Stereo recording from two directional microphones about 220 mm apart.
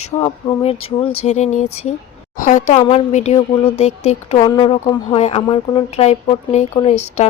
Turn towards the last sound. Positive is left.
turn(degrees=25)  # may be behind; listen again after turning